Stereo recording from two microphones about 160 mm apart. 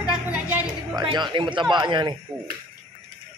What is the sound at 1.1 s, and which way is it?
A man's voice, 30° right (ahead or behind).